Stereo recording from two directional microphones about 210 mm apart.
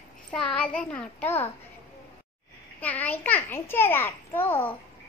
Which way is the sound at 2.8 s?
5° left (ahead or behind).